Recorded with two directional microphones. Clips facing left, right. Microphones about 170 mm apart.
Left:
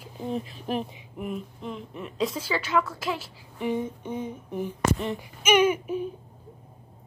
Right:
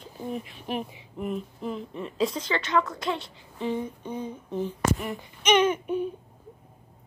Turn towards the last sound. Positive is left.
turn(degrees=0)  # may be behind; listen again after turning